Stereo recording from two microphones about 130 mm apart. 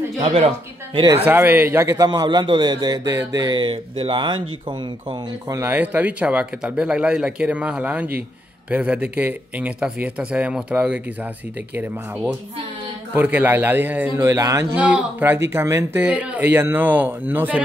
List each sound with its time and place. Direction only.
0.2 s speech: 50° right (ahead or behind)
1.2 s a man's voice: 15° right (ahead or behind); by 4.7 s 35° right (ahead or behind)
5.5 s speech: 15° right (ahead or behind)
13.1 s speech: 15° right (ahead or behind)
14.8 s speech: 10° right (ahead or behind)